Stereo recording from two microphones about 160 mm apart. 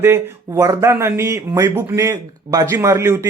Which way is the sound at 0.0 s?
15° right (ahead or behind).